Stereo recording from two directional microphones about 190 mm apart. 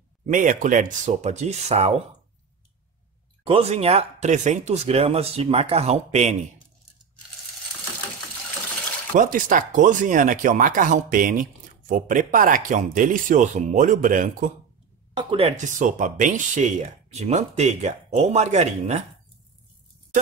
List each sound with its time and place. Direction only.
0.3 s speech: 45° right (ahead or behind)
3.4 s speech: 30° right (ahead or behind)
9.1 s speech: 45° right (ahead or behind)
15.1 s speech: 30° right (ahead or behind)